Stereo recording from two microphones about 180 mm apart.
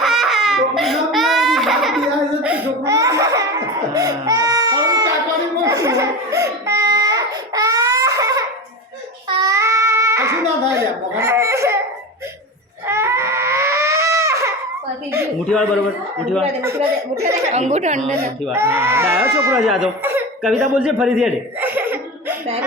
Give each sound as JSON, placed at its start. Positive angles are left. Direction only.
{"t": 0.0, "sound": "giggle", "side_deg": 0}
{"t": 2.8, "sound": "laughter", "side_deg": -15}
{"t": 3.9, "sound": "baby cry", "side_deg": -20}
{"t": 5.6, "sound": "crying", "side_deg": -20}
{"t": 9.4, "sound": "a sound", "side_deg": -15}
{"t": 12.9, "sound": "screaming", "side_deg": -15}
{"t": 16.6, "sound": "speech", "side_deg": -15}
{"t": 17.4, "sound": "speech", "side_deg": -40}
{"t": 18.0, "sound": "speech", "side_deg": 0}
{"t": 18.5, "sound": "speech", "side_deg": -15}
{"t": 19.5, "sound": "speech", "side_deg": 0}
{"t": 20.4, "sound": "a sound", "side_deg": 0}